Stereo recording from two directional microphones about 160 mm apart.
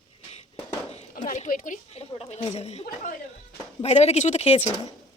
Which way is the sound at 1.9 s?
40° left (ahead or behind).